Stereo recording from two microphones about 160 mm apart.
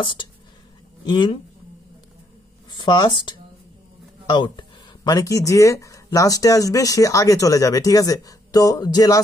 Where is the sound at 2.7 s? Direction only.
30° left (ahead or behind).